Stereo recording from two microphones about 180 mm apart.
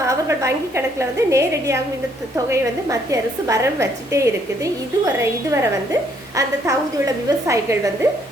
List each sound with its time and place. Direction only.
0.0 s a woman's voice: 15° right (ahead or behind)